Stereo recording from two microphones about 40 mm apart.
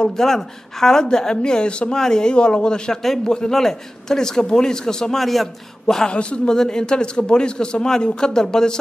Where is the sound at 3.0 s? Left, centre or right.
Centre.